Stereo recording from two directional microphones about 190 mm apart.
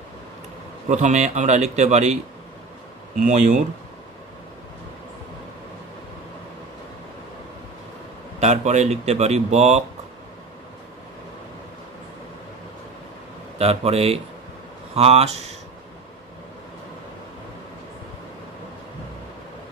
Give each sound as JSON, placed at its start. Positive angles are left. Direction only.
{"t": 0.8, "sound": "speech", "side_deg": -40}
{"t": 3.2, "sound": "speech", "side_deg": -40}
{"t": 8.4, "sound": "speech", "side_deg": -35}
{"t": 13.6, "sound": "speech", "side_deg": -30}